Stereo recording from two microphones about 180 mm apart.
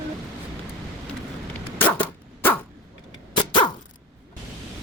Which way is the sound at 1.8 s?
10° left (ahead or behind).